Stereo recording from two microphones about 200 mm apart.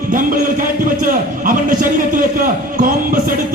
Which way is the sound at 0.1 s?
45° right (ahead or behind).